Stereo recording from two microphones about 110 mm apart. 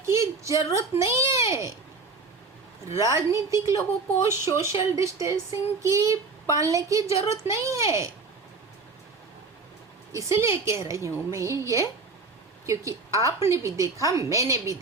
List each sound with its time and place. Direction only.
0.0 s a child's voice: 25° right (ahead or behind)
2.9 s a woman's voice: 25° right (ahead or behind)
10.1 s a woman's voice: 30° right (ahead or behind)